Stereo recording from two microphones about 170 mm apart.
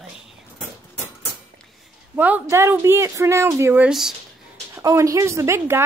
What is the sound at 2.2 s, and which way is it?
Speech, 10° right (ahead or behind).